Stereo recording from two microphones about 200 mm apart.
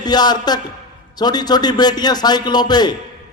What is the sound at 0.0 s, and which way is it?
A man's voice, 20° left (ahead or behind).